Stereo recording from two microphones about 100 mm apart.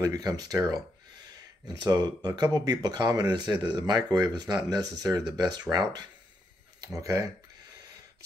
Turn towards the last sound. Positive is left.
turn(degrees=-30)  # may be behind; listen again after turning